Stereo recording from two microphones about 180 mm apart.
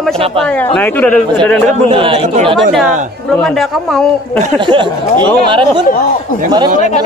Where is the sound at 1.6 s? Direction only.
30° right (ahead or behind).